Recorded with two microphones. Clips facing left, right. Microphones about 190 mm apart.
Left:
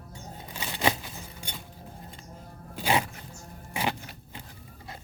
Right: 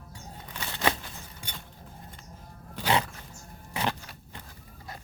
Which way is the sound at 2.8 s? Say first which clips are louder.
Even; 15° left (ahead or behind).